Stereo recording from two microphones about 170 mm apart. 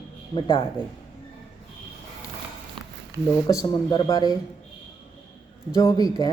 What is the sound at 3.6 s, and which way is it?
Speech, 25° left (ahead or behind).